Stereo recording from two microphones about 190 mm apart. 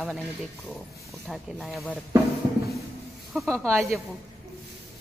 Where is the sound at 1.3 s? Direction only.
Centre (ahead or behind).